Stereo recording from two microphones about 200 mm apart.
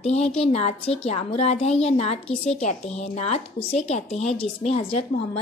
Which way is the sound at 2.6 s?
35° left (ahead or behind).